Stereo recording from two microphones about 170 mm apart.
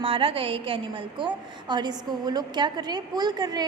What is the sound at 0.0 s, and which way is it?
A woman's voice, 30° right (ahead or behind).